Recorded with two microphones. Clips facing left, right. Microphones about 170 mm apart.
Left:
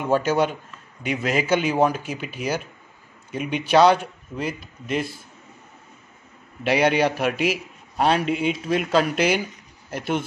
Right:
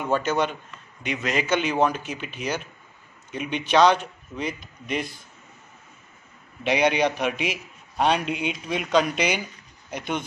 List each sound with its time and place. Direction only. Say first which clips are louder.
0.0 s a man's voice: left 3 dB; 10° left (ahead or behind)
6.6 s a man's voice: left 2 dB; 5° left (ahead or behind)